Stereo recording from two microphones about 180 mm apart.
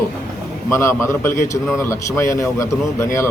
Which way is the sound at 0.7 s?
15° left (ahead or behind).